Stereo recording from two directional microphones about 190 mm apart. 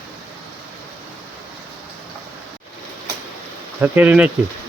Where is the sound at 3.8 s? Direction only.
10° right (ahead or behind).